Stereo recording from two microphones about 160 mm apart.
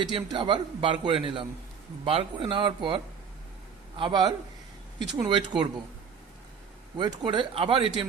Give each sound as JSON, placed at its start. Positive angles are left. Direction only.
{"t": 0.0, "sound": "a man's voice", "side_deg": -30}
{"t": 6.9, "sound": "a man's voice", "side_deg": -25}